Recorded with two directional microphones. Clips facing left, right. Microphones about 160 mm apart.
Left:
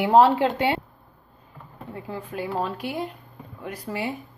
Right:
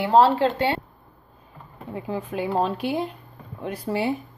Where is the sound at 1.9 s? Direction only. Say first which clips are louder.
Right 5 dB; 20° right (ahead or behind).